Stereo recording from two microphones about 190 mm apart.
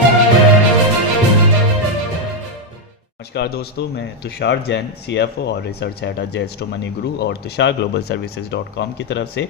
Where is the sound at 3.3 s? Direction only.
60° left (ahead or behind).